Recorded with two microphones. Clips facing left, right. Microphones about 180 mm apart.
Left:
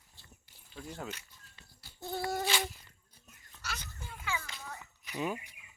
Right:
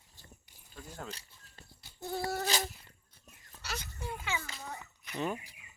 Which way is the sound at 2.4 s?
40° right (ahead or behind).